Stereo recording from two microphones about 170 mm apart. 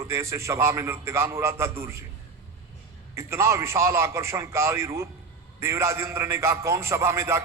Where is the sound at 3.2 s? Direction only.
15° right (ahead or behind).